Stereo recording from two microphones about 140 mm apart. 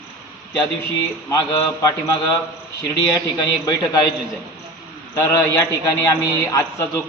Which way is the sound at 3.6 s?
25° left (ahead or behind).